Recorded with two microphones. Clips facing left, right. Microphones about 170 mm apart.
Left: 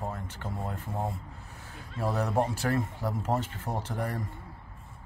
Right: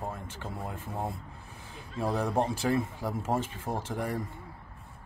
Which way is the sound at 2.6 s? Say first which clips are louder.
Right 1 dB; 10° right (ahead or behind).